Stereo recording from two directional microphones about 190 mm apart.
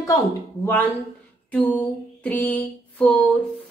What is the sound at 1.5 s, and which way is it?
A woman's voice, 10° left (ahead or behind).